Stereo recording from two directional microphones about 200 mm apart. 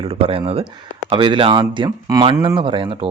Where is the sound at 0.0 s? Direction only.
30° right (ahead or behind).